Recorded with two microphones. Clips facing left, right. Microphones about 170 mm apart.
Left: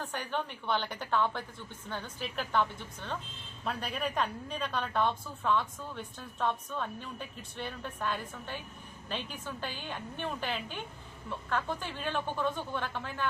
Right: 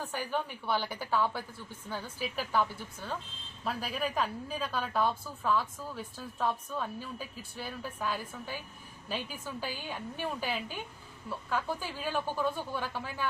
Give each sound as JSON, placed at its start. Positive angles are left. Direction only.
{"t": 0.0, "sound": "a woman's voice", "side_deg": -5}